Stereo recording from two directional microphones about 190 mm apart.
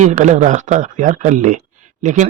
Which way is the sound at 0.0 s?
40° right (ahead or behind).